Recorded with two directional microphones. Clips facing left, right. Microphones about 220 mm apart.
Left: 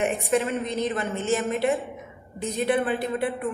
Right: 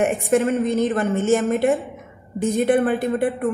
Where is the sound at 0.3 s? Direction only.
45° right (ahead or behind).